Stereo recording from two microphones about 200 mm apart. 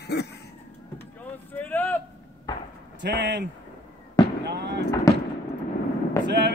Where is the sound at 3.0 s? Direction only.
60° right (ahead or behind).